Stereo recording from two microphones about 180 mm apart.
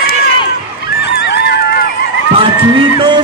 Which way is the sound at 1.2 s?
65° left (ahead or behind).